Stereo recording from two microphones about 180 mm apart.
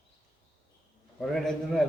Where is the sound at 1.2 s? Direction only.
Centre (ahead or behind).